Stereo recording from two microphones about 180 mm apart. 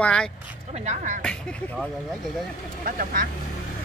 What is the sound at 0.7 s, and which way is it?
Speech, 40° right (ahead or behind).